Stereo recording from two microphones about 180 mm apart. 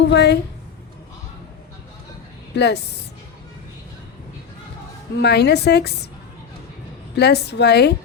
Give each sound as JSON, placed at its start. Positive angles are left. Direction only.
{"t": 0.0, "sound": "a woman's voice", "side_deg": 70}
{"t": 2.6, "sound": "a woman's voice", "side_deg": 65}
{"t": 5.2, "sound": "a woman's voice", "side_deg": 65}
{"t": 7.2, "sound": "a woman's voice", "side_deg": 65}